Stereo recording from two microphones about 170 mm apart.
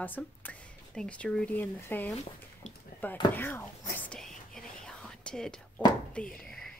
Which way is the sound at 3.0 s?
10° left (ahead or behind).